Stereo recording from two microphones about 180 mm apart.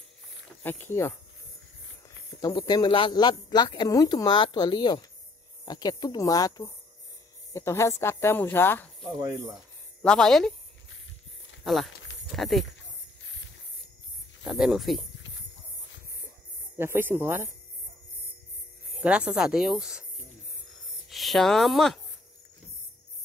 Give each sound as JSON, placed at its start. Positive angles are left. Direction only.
{"t": 0.7, "sound": "speech", "side_deg": 10}
{"t": 2.4, "sound": "a woman's voice", "side_deg": 20}
{"t": 11.6, "sound": "speech", "side_deg": 0}
{"t": 14.4, "sound": "speech", "side_deg": -5}
{"t": 16.7, "sound": "speech", "side_deg": -15}
{"t": 18.9, "sound": "speech", "side_deg": -5}
{"t": 21.1, "sound": "speech", "side_deg": 0}